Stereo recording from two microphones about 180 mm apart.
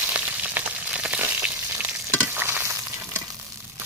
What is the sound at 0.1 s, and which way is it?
Frying, 10° right (ahead or behind).